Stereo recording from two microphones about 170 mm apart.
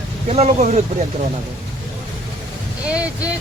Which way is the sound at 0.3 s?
40° right (ahead or behind).